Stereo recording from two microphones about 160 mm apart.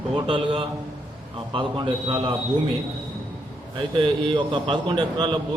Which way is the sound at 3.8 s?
30° right (ahead or behind).